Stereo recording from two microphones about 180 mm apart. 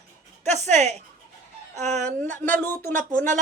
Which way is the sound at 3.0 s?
45° right (ahead or behind).